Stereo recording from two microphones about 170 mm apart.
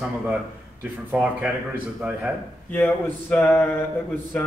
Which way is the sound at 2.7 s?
10° left (ahead or behind).